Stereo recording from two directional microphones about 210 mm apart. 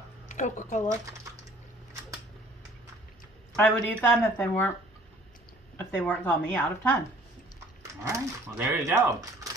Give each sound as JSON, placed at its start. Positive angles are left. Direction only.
{"t": 0.3, "sound": "speech", "side_deg": 35}
{"t": 3.5, "sound": "speech", "side_deg": 5}
{"t": 5.8, "sound": "speech", "side_deg": 10}
{"t": 8.0, "sound": "speech", "side_deg": -10}